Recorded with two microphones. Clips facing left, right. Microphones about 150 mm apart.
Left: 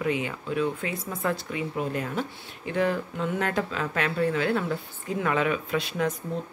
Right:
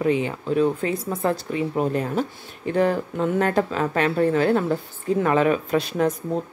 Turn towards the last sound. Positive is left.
turn(degrees=-40)  # may be behind; listen again after turning